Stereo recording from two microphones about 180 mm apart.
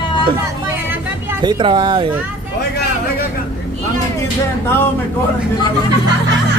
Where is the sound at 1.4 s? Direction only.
25° right (ahead or behind).